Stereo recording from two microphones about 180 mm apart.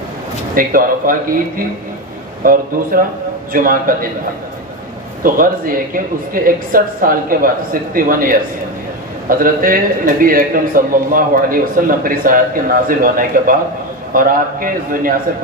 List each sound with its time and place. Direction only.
0.6 s a man's voice: 50° right (ahead or behind)
5.2 s a man's voice: 50° right (ahead or behind)